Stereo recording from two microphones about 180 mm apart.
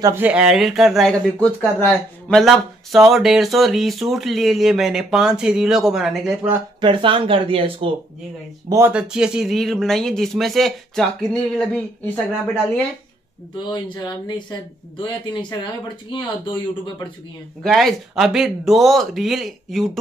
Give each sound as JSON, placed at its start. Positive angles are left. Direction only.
{"t": 0.0, "sound": "speech", "side_deg": -10}
{"t": 6.8, "sound": "speech", "side_deg": -30}
{"t": 8.6, "sound": "speech", "side_deg": -15}
{"t": 8.9, "sound": "speech", "side_deg": -5}
{"t": 13.7, "sound": "speech", "side_deg": 25}
{"t": 17.6, "sound": "speech", "side_deg": 0}